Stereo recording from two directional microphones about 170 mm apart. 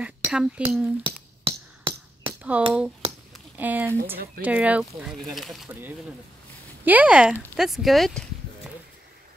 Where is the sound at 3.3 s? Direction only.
10° right (ahead or behind).